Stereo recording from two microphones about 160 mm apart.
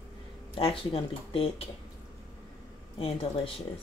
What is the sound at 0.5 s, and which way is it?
Speech, 35° left (ahead or behind).